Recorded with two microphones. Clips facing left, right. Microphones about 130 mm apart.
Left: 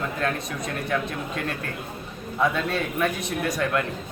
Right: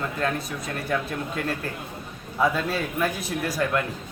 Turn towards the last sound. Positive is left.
turn(degrees=-5)  # may be behind; listen again after turning